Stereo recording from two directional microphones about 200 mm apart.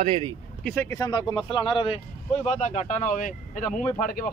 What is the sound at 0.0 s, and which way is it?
Speech, 30° right (ahead or behind).